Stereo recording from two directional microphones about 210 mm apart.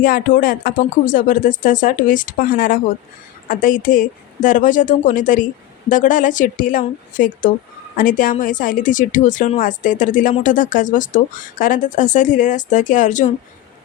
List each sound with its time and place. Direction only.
0.0 s a woman's voice: 40° left (ahead or behind)